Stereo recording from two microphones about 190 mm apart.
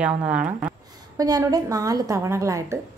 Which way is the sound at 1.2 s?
20° right (ahead or behind).